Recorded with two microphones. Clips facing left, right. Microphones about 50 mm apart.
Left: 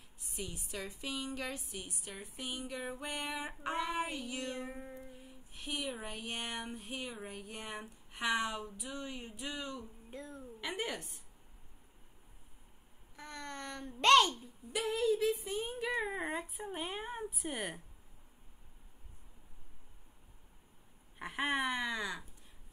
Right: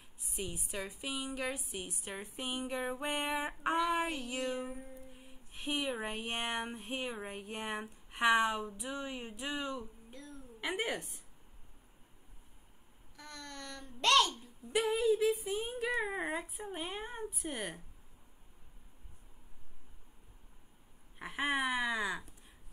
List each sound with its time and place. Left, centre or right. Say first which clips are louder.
0.4 s a woman's voice: right 2 dB; right
1.7 s speech: right 3 dB; right
4.2 s a woman's voice: right 3 dB; centre
4.6 s a child's voice: even; left
5.2 s a sound: right 5 dB; right
8.1 s speech: right 6 dB; right
10.1 s a child's voice: left 4 dB; left
10.6 s a woman's voice: right 3 dB; centre
13.1 s a child's voice: left 3 dB; left
14.9 s a woman's voice: right 1 dB; centre
21.2 s a woman's voice: right 1 dB; centre